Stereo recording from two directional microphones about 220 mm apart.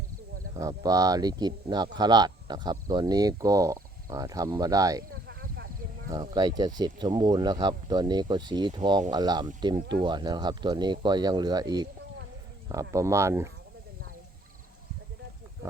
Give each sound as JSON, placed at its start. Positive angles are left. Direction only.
{"t": 0.5, "sound": "speech", "side_deg": -15}
{"t": 5.3, "sound": "a sound", "side_deg": -45}
{"t": 6.1, "sound": "speech", "side_deg": -20}